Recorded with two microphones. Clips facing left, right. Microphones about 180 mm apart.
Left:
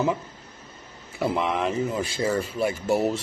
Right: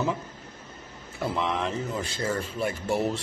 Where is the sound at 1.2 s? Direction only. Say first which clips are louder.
Left 4 dB; 10° left (ahead or behind).